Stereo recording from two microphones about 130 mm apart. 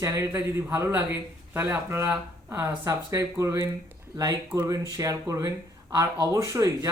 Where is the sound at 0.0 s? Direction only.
20° right (ahead or behind).